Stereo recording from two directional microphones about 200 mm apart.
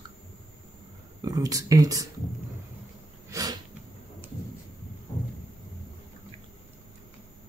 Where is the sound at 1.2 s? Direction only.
20° right (ahead or behind).